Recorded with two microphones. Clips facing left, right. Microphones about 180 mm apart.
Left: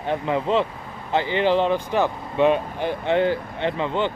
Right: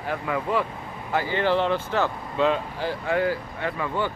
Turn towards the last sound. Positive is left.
turn(degrees=25)  # may be behind; listen again after turning